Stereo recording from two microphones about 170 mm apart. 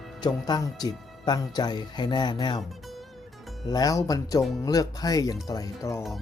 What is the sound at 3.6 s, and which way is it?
Speech, 20° left (ahead or behind).